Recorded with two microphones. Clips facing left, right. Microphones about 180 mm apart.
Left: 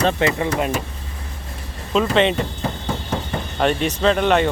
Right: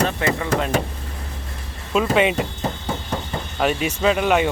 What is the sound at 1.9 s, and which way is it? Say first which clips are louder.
Speech: left 1 dB; 5° right (ahead or behind).